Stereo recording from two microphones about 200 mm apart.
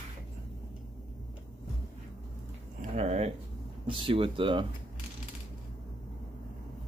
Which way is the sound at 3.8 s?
25° right (ahead or behind).